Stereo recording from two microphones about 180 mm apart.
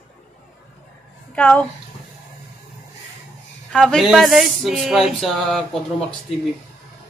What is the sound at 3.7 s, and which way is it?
Speech, centre (ahead or behind).